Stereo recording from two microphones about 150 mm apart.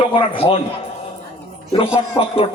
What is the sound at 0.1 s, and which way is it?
Speech, 40° left (ahead or behind).